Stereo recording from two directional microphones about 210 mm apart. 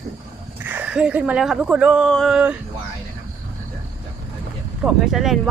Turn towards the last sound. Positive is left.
turn(degrees=0)  # may be behind; listen again after turning